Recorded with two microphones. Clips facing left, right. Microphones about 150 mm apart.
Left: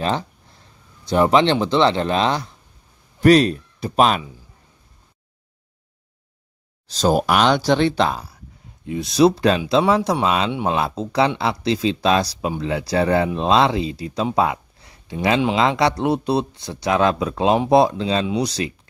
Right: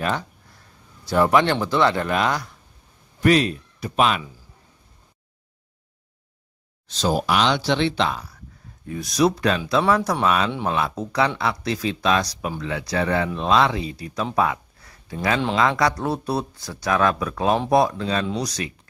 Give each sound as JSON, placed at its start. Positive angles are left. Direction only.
{"t": 1.0, "sound": "speech", "side_deg": 20}
{"t": 3.2, "sound": "speech", "side_deg": 35}
{"t": 6.9, "sound": "speech", "side_deg": 45}
{"t": 8.8, "sound": "speech", "side_deg": 25}